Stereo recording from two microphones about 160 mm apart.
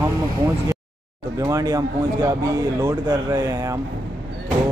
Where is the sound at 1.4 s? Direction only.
20° right (ahead or behind).